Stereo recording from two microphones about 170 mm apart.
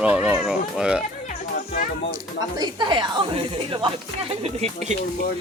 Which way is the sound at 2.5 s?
25° right (ahead or behind).